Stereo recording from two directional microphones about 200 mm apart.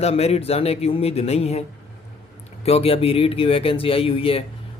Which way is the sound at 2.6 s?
30° left (ahead or behind).